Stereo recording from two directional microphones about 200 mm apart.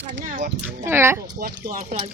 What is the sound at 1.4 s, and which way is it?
Speech, 45° right (ahead or behind).